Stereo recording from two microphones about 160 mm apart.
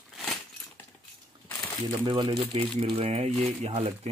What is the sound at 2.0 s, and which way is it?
Speech, 25° right (ahead or behind).